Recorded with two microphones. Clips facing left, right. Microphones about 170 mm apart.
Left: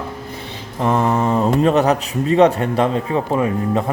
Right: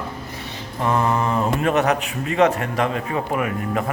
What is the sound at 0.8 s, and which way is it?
Speech, 25° left (ahead or behind).